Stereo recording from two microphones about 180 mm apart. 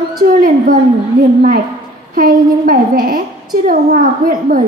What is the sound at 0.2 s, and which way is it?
Speech, 55° right (ahead or behind).